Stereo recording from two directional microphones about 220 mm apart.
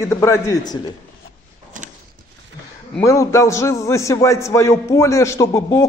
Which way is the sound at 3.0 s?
15° left (ahead or behind).